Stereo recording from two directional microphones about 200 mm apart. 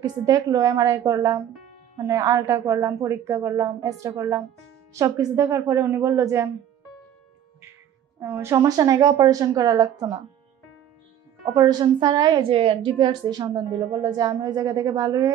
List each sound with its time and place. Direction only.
0.0 s a woman's voice: 20° right (ahead or behind)
8.2 s a woman's voice: 10° right (ahead or behind)
11.5 s a woman's voice: 20° right (ahead or behind)